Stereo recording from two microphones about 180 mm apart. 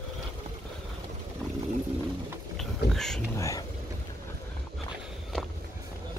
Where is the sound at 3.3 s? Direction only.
15° left (ahead or behind).